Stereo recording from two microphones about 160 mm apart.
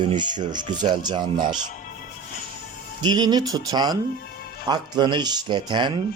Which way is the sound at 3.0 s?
25° right (ahead or behind).